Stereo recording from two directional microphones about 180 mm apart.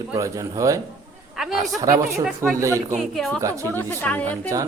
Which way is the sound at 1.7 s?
20° right (ahead or behind).